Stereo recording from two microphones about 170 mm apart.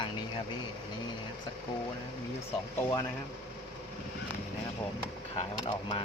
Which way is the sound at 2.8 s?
15° left (ahead or behind).